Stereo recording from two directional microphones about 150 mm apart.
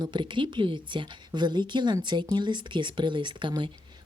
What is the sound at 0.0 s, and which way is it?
Speech, 30° right (ahead or behind).